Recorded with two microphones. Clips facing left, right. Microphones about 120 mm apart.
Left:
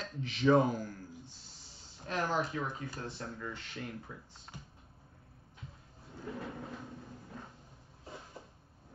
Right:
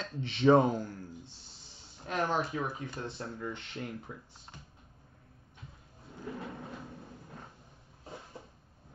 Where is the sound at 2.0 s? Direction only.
20° right (ahead or behind).